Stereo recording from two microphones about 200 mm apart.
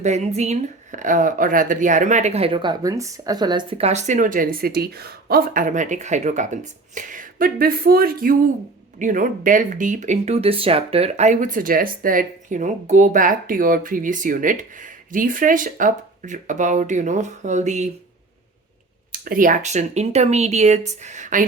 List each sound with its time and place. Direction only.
0.0 s speech: 35° right (ahead or behind)
19.1 s speech: 45° right (ahead or behind)